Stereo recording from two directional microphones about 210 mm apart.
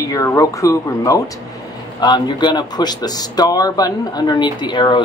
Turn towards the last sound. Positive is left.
turn(degrees=20)  # may be behind; listen again after turning